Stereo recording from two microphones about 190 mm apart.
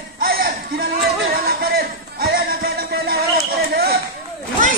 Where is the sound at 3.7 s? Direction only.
55° right (ahead or behind).